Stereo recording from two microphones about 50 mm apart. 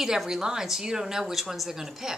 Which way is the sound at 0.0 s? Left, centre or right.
Centre.